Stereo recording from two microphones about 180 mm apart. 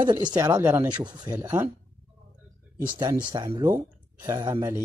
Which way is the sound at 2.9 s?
20° right (ahead or behind).